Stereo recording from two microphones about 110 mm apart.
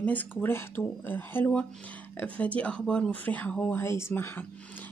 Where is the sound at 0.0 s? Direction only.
15° left (ahead or behind).